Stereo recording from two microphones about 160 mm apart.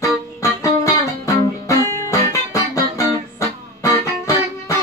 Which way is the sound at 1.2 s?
20° left (ahead or behind).